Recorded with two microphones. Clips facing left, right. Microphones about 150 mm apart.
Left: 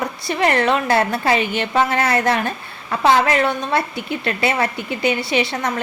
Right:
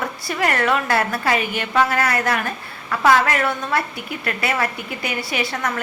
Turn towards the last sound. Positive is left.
turn(degrees=20)  # may be behind; listen again after turning